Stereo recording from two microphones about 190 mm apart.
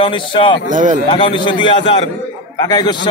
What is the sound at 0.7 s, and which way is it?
Speech, 40° right (ahead or behind).